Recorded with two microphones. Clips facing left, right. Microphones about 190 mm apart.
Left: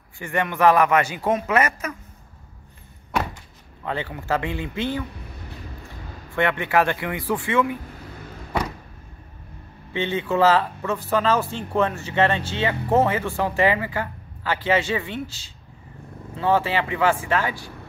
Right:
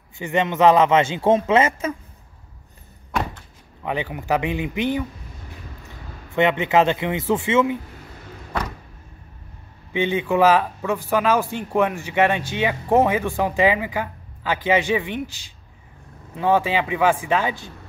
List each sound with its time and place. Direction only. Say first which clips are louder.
0.2 s a man's voice: right 3 dB; 20° right (ahead or behind)
3.8 s speech: right 2 dB; 15° right (ahead or behind)
6.3 s a man's voice: right 3 dB; 20° right (ahead or behind)
9.9 s speech: right 2 dB; 15° right (ahead or behind)